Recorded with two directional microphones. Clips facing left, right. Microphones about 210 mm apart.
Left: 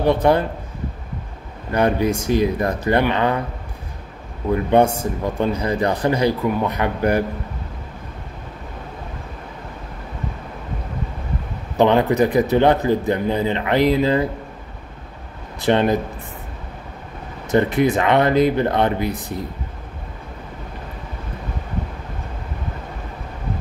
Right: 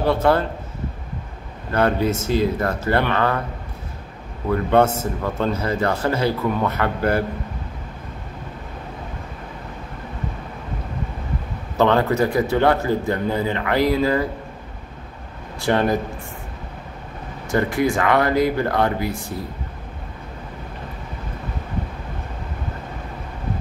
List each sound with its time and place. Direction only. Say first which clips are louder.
0.0 s a man's voice: left 2 dB; 15° left (ahead or behind)
1.7 s a man's voice: left 1 dB; 15° left (ahead or behind)
4.5 s a man's voice: left 1 dB; 15° left (ahead or behind)
11.7 s speech: left 2 dB; 15° left (ahead or behind)
15.6 s speech: left 2 dB; 20° left (ahead or behind)
17.5 s speech: left 3 dB; 20° left (ahead or behind)